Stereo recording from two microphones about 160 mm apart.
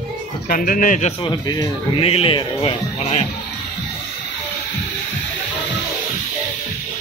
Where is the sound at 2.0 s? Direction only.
35° left (ahead or behind).